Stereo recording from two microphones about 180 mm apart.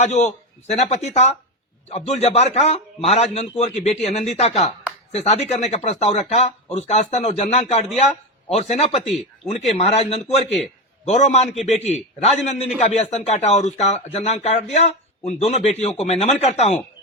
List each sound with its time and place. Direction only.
0.0 s a man's voice: 40° left (ahead or behind)